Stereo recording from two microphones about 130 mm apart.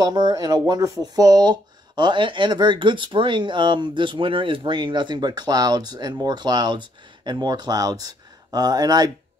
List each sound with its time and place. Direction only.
0.0 s speech: 30° right (ahead or behind)